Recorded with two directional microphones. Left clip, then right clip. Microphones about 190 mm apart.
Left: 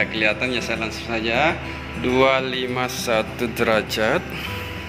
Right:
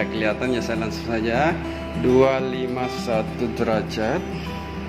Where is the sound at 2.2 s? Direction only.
20° right (ahead or behind); by 4.2 s centre (ahead or behind).